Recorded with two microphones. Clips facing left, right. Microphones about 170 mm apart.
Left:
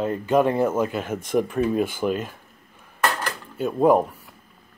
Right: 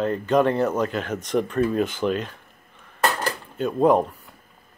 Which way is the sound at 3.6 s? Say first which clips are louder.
Left 1 dB; 5° left (ahead or behind).